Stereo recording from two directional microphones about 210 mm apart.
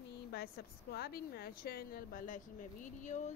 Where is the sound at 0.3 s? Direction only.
50° left (ahead or behind).